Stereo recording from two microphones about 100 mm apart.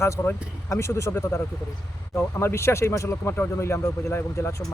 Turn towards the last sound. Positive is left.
turn(degrees=25)  # may be behind; listen again after turning